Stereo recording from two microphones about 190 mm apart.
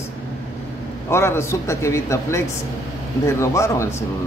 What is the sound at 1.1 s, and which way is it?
Speech, 15° left (ahead or behind).